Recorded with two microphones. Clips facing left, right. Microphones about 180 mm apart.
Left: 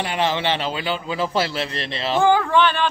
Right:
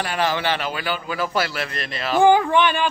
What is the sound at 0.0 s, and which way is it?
A man's voice, 20° left (ahead or behind).